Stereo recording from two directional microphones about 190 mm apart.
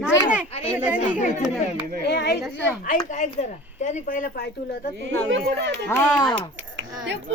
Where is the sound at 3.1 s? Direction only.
40° left (ahead or behind).